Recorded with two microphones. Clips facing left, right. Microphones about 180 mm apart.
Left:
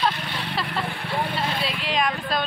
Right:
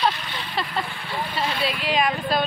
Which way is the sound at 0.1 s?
70° left (ahead or behind).